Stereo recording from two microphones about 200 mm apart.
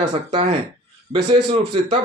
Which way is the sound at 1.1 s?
25° right (ahead or behind).